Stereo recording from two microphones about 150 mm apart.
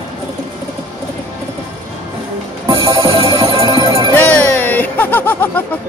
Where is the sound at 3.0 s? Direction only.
40° right (ahead or behind).